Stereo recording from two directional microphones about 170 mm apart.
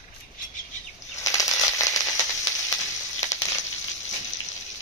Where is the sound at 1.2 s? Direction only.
20° left (ahead or behind).